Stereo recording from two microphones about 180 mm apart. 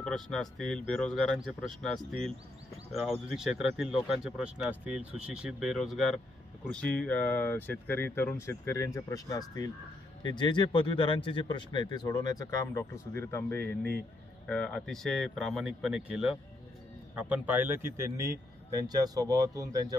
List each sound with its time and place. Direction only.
0.0 s a man's voice: centre (ahead or behind); by 20.0 s 20° right (ahead or behind)